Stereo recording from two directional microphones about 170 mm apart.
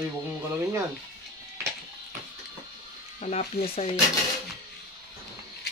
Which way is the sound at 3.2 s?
40° left (ahead or behind).